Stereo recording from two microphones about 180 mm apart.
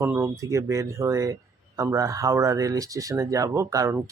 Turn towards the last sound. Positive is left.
turn(degrees=-15)  # may be behind; listen again after turning